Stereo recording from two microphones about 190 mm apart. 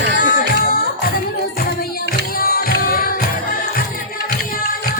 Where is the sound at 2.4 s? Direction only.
50° left (ahead or behind).